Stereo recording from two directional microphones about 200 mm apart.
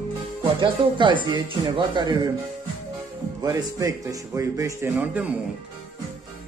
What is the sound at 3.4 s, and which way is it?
Speech, 20° right (ahead or behind).